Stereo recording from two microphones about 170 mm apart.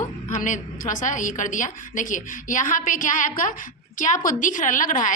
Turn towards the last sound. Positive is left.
turn(degrees=50)  # may be behind; listen again after turning